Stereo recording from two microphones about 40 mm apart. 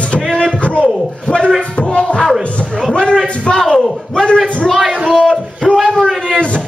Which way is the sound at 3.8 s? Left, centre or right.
Centre.